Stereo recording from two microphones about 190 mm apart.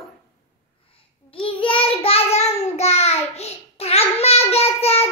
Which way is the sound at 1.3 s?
30° left (ahead or behind).